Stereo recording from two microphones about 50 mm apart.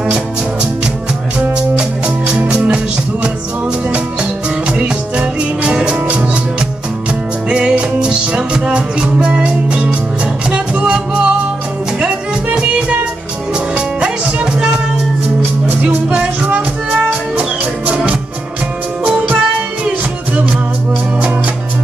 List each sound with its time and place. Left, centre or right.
1.8 s music: centre
7.4 s music: centre
13.7 s music: centre
16.1 s music: right
19.0 s music: right